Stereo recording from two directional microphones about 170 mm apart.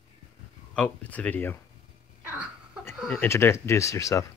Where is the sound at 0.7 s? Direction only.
10° left (ahead or behind).